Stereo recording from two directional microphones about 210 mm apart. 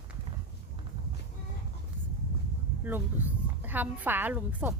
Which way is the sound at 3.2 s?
10° right (ahead or behind).